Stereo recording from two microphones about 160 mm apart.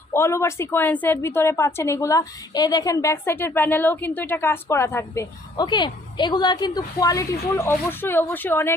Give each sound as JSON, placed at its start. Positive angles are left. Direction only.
{"t": 0.1, "sound": "a woman's voice", "side_deg": 15}
{"t": 5.6, "sound": "a woman's voice", "side_deg": 30}